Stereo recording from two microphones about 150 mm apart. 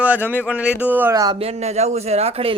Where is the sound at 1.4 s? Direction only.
45° right (ahead or behind).